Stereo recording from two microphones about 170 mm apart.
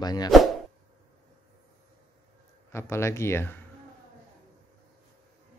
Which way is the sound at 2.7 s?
15° left (ahead or behind).